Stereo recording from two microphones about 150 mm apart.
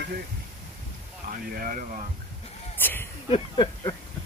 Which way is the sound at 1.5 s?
65° right (ahead or behind).